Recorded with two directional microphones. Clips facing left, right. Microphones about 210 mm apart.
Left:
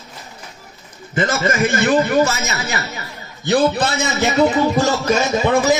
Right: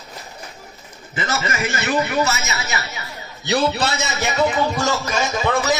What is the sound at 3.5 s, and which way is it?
Speech, 50° left (ahead or behind).